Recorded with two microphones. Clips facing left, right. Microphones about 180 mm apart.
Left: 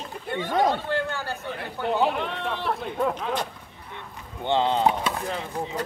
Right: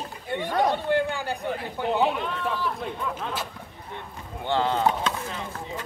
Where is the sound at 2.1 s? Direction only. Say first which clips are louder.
Even; 65° left (ahead or behind).